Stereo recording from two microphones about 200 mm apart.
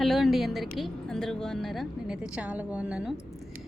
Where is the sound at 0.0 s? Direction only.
Centre (ahead or behind).